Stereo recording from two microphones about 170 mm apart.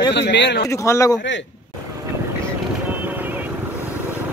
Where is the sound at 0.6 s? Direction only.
15° left (ahead or behind).